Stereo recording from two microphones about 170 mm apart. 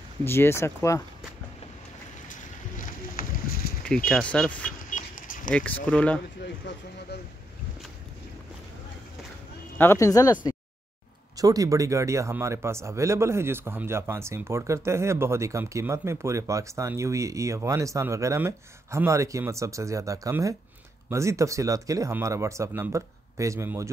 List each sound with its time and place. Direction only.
0.2 s speech: 15° left (ahead or behind)
3.8 s speech: 5° left (ahead or behind)
4.6 s vehicle: 55° left (ahead or behind)
5.5 s speech: 5° left (ahead or behind)
9.8 s speech: 15° left (ahead or behind)
11.3 s a man's voice: 20° right (ahead or behind)